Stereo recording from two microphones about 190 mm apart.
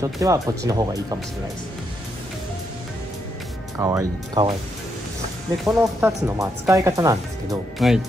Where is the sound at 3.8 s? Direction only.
15° right (ahead or behind).